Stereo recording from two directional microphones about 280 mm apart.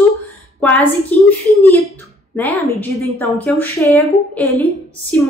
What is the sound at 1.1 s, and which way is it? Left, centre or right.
Speech, centre.